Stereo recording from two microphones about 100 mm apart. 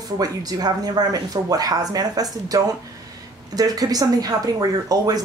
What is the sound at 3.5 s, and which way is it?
Speech, 40° right (ahead or behind).